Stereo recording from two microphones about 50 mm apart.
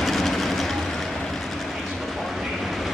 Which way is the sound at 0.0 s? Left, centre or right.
Centre.